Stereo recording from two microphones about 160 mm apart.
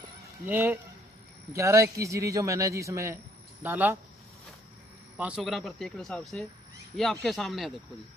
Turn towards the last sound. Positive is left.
turn(degrees=0)  # may be behind; listen again after turning